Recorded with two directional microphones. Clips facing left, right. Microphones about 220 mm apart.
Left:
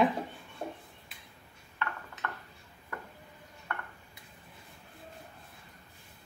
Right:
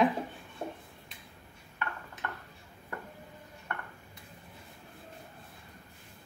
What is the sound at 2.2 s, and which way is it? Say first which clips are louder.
Dishes: even; 20° right (ahead or behind).